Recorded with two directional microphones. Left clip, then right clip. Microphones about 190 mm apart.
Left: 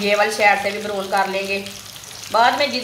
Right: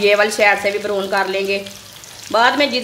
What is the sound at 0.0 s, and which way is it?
Speech, 55° right (ahead or behind).